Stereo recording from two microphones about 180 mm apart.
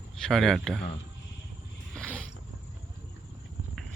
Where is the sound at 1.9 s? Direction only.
5° left (ahead or behind).